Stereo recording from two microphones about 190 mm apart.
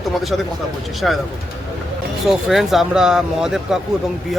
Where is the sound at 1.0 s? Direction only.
Centre (ahead or behind).